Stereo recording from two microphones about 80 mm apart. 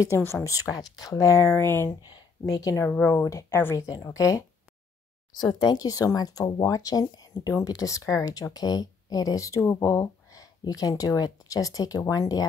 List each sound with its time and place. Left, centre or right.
0.3 s speech: left
2.0 s speech: left
2.8 s speech: left
5.5 s speech: left